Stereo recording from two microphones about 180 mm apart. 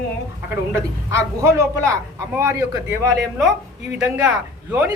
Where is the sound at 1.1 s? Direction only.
15° right (ahead or behind).